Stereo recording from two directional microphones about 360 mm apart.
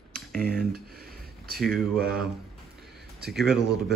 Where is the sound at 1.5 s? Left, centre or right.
Centre.